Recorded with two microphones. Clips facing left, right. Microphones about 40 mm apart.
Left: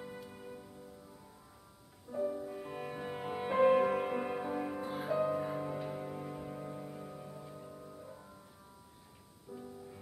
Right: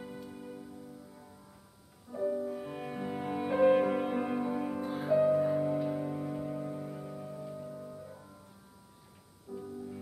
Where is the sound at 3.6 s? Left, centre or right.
Centre.